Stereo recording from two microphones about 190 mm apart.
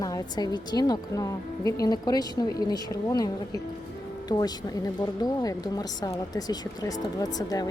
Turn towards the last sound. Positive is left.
turn(degrees=20)  # may be behind; listen again after turning